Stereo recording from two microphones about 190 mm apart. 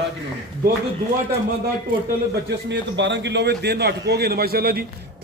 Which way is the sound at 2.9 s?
70° right (ahead or behind).